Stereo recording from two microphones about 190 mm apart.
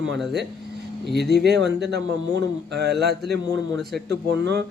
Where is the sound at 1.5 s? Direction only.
65° right (ahead or behind).